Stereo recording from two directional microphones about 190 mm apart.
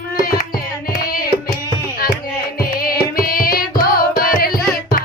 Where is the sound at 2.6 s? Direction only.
50° left (ahead or behind).